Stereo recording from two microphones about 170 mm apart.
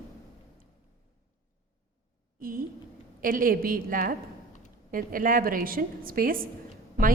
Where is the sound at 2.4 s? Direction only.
55° right (ahead or behind).